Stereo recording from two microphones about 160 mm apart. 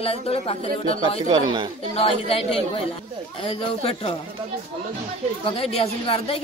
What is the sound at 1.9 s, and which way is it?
A woman's voice, 35° left (ahead or behind).